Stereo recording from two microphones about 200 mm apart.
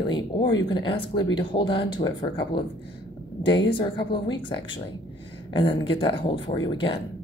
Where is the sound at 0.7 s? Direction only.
25° left (ahead or behind).